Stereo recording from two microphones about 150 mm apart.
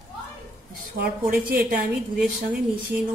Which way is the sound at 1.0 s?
75° right (ahead or behind).